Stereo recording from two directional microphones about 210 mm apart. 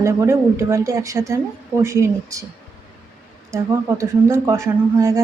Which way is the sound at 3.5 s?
15° right (ahead or behind).